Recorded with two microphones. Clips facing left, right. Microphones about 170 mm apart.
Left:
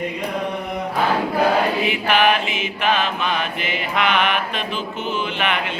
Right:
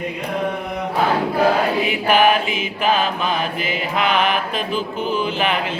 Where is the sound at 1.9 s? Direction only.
40° right (ahead or behind).